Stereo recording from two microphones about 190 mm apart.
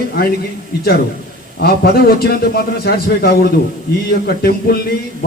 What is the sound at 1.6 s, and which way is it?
A man's voice, 55° left (ahead or behind).